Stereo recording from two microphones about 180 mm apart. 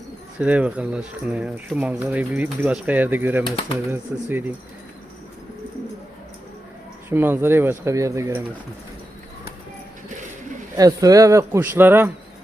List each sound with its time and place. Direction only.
0.3 s speech: 10° right (ahead or behind)
7.1 s speech: 10° right (ahead or behind)
10.8 s speech: 20° right (ahead or behind)